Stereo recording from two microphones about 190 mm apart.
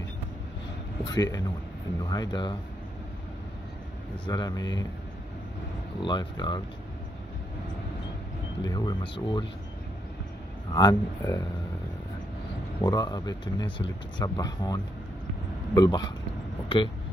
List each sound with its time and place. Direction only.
1.0 s speech: 20° left (ahead or behind)
4.3 s speech: 20° left (ahead or behind)
5.9 s speech: 25° left (ahead or behind)
8.6 s speech: 20° left (ahead or behind)
10.7 s speech: 20° left (ahead or behind)
12.8 s speech: 20° left (ahead or behind)